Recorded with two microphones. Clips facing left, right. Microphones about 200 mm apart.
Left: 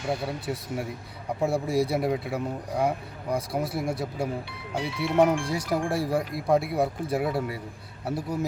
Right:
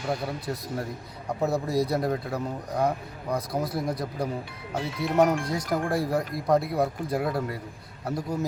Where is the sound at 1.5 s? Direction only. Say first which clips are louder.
Left 1 dB; 30° left (ahead or behind).